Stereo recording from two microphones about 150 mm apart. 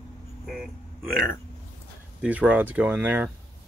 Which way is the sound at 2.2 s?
10° right (ahead or behind).